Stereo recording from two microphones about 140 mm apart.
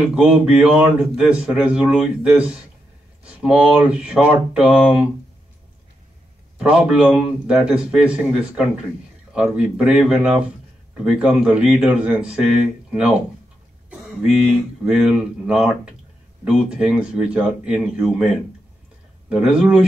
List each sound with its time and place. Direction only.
0.1 s a man's voice: 10° right (ahead or behind)
6.6 s a man's voice: 5° right (ahead or behind)
13.8 s a sound: 5° right (ahead or behind)
14.9 s a man's voice: 5° right (ahead or behind)
19.2 s a man's voice: 5° right (ahead or behind)